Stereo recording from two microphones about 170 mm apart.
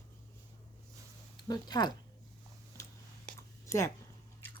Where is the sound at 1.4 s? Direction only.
25° left (ahead or behind).